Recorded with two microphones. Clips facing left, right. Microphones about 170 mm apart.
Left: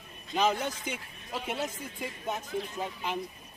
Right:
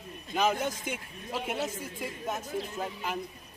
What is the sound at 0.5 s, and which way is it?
Speech, 50° right (ahead or behind).